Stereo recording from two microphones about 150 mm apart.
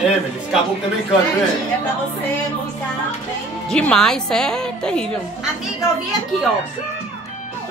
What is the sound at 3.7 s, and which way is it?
A woman's voice, 5° left (ahead or behind).